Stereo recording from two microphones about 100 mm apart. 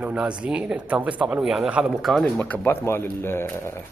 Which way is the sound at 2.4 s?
20° left (ahead or behind).